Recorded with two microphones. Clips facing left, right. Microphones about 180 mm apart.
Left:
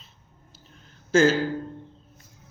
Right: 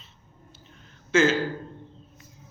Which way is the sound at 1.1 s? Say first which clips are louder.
Left 2 dB; 40° left (ahead or behind).